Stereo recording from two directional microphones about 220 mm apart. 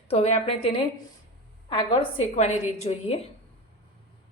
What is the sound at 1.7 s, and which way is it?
A woman's voice, 20° left (ahead or behind).